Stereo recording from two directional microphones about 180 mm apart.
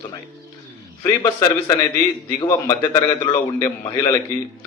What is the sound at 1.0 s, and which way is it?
A man's voice, 20° left (ahead or behind).